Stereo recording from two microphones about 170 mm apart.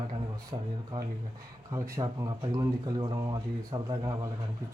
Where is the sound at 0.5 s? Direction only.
30° right (ahead or behind).